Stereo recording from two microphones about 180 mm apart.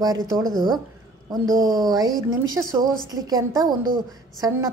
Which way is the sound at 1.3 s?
20° right (ahead or behind).